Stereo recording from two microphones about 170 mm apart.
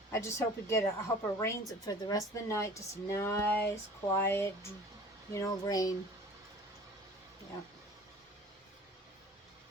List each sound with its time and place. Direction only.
0.1 s a woman's voice: 15° left (ahead or behind)